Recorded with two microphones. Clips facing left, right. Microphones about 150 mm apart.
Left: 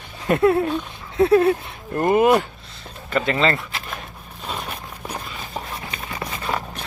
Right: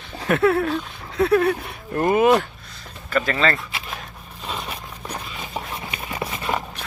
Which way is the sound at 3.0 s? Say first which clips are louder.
Left 1 dB; 25° left (ahead or behind).